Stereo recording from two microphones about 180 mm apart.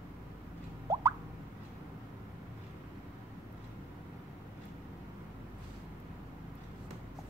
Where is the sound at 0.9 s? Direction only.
15° right (ahead or behind).